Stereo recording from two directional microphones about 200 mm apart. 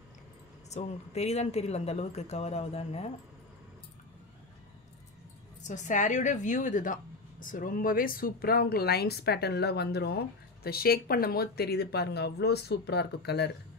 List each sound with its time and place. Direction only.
0.7 s speech: 35° left (ahead or behind)
5.6 s a woman's voice: 40° left (ahead or behind); by 13.5 s 55° left (ahead or behind)